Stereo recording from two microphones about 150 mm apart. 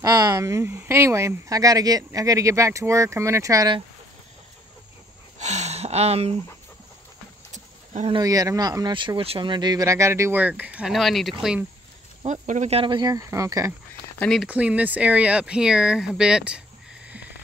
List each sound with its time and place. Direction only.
0.0 s speech: 20° right (ahead or behind)
5.4 s speech: 50° right (ahead or behind)
7.5 s a sound: 55° right (ahead or behind)
8.1 s speech: 25° right (ahead or behind); by 11.3 s centre (ahead or behind)
12.3 s speech: 55° right (ahead or behind); by 13.7 s 20° right (ahead or behind)
14.2 s speech: centre (ahead or behind)